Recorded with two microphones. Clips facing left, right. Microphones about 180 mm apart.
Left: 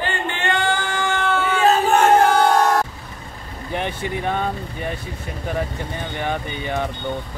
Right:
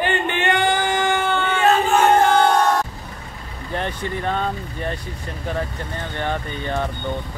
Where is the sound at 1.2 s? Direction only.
5° left (ahead or behind).